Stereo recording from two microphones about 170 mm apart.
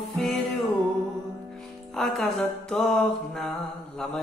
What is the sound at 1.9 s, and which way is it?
Music, centre (ahead or behind).